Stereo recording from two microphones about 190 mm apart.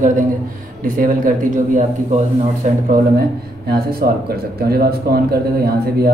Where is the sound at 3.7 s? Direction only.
55° right (ahead or behind).